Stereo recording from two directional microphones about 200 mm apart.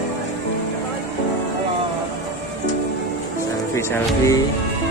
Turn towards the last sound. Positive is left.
turn(degrees=15)  # may be behind; listen again after turning